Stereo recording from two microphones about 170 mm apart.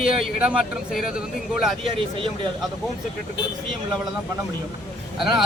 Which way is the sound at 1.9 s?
30° right (ahead or behind).